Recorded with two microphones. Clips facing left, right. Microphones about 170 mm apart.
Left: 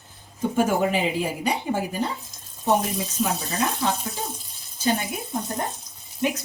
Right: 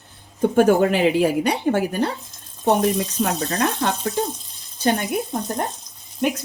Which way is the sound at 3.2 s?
65° right (ahead or behind).